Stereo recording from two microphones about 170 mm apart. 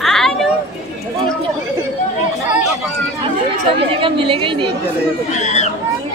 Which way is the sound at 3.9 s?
30° right (ahead or behind).